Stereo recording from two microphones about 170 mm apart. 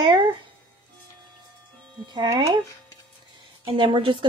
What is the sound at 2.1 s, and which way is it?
Speech, 25° right (ahead or behind).